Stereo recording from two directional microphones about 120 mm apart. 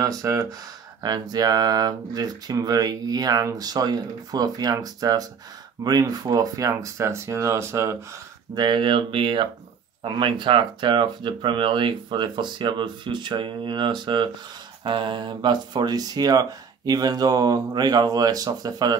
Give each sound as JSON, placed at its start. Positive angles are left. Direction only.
{"t": 0.0, "sound": "speech", "side_deg": -30}
{"t": 8.5, "sound": "speech", "side_deg": -40}